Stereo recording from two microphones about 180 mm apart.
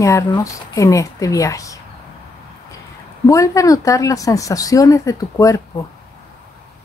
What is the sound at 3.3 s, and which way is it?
Speech, 20° left (ahead or behind).